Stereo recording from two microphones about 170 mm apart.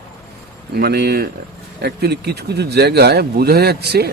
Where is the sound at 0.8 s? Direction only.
70° right (ahead or behind).